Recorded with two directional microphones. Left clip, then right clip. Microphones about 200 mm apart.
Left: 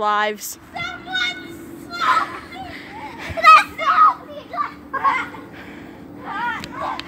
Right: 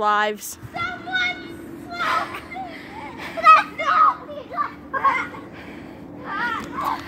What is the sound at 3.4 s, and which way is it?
Children playing, 40° left (ahead or behind).